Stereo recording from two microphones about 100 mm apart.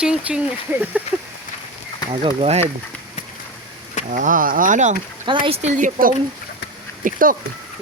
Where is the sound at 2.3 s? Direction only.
90° right.